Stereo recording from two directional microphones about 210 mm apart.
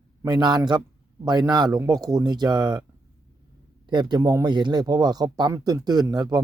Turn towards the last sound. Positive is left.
turn(degrees=-20)  # may be behind; listen again after turning